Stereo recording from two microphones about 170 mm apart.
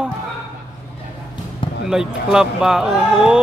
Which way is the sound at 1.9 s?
5° right (ahead or behind).